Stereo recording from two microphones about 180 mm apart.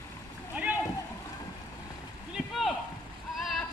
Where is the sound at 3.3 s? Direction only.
Centre (ahead or behind).